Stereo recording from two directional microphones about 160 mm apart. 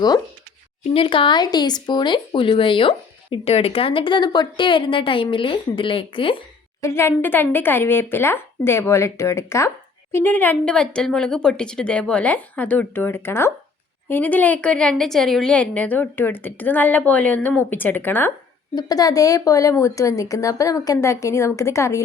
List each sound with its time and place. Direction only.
0.9 s speech: 35° left (ahead or behind)
6.8 s a woman's voice: 15° left (ahead or behind)
18.7 s speech: 25° left (ahead or behind)